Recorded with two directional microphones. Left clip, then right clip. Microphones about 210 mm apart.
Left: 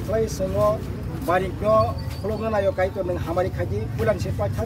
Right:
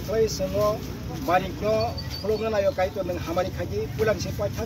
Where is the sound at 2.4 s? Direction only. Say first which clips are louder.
Left 3 dB; 10° left (ahead or behind).